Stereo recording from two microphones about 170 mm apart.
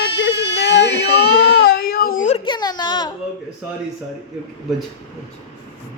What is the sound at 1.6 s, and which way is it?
Baby cry, 70° left (ahead or behind).